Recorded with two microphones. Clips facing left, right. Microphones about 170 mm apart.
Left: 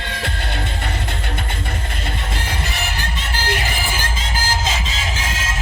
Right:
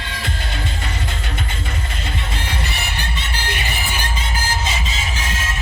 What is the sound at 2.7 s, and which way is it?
Music, 90° left.